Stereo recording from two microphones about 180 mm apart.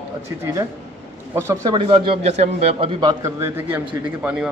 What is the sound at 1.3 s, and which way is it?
Speech, 20° right (ahead or behind).